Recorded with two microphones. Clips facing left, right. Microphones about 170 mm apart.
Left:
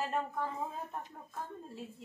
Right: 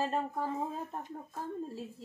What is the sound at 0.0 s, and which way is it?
Speech, 30° right (ahead or behind).